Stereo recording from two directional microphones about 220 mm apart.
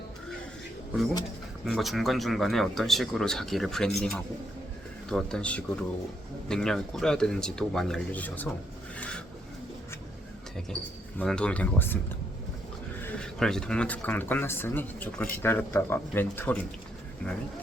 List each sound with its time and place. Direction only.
1.6 s speech: centre (ahead or behind)
11.2 s speech: 5° left (ahead or behind)
13.0 s speech: 5° left (ahead or behind)